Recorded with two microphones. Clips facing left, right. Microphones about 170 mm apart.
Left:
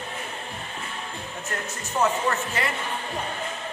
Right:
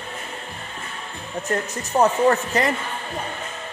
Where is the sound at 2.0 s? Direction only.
40° right (ahead or behind).